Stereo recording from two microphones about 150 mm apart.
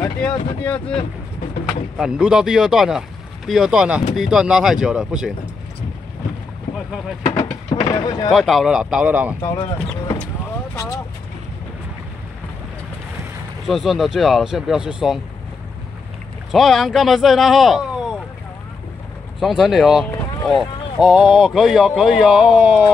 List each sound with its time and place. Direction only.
0.2 s speech: 5° left (ahead or behind)
2.0 s speech: 5° right (ahead or behind)
7.8 s speech: 25° left (ahead or behind)
8.3 s speech: centre (ahead or behind)
10.7 s vehicle: 20° left (ahead or behind)
13.7 s speech: centre (ahead or behind)
16.5 s speech: centre (ahead or behind)
19.4 s speech: centre (ahead or behind)